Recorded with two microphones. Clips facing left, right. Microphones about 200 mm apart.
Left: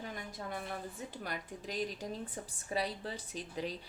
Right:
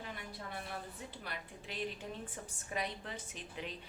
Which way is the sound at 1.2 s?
40° left (ahead or behind).